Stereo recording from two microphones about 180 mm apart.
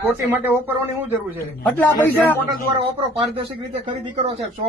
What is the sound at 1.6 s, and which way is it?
Speech, 10° left (ahead or behind).